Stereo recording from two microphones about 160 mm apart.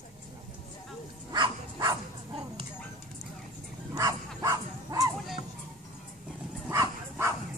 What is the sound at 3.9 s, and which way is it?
Dog, 20° right (ahead or behind).